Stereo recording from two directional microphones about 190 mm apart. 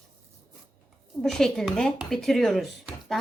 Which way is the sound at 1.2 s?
Centre (ahead or behind).